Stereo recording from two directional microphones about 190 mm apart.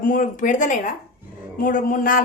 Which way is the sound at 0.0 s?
45° left (ahead or behind).